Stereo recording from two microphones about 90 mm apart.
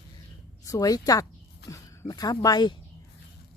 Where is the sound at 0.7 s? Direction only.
40° left (ahead or behind).